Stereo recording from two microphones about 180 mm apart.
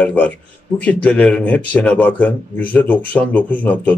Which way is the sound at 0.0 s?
10° left (ahead or behind).